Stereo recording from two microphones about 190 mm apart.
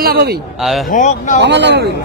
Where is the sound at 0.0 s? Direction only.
55° right (ahead or behind).